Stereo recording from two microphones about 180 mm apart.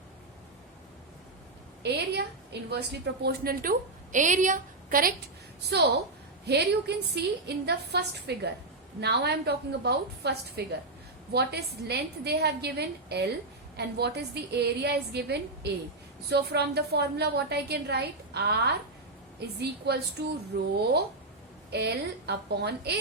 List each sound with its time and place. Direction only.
1.8 s a woman's voice: 65° right (ahead or behind)
6.4 s a woman's voice: 65° right (ahead or behind)